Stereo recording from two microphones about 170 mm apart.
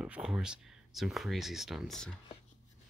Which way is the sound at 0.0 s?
5° right (ahead or behind).